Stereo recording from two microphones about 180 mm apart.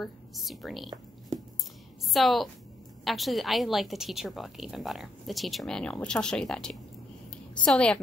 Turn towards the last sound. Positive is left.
turn(degrees=5)  # may be behind; listen again after turning